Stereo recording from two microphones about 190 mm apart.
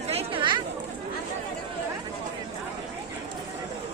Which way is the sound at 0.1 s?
30° right (ahead or behind).